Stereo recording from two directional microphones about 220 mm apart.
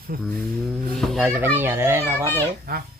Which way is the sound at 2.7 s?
40° right (ahead or behind).